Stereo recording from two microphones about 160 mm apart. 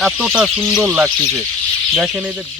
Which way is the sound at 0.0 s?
5° right (ahead or behind).